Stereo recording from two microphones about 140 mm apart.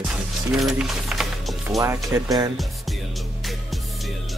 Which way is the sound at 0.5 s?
Centre (ahead or behind).